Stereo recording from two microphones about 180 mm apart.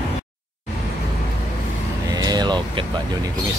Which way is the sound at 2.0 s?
20° right (ahead or behind).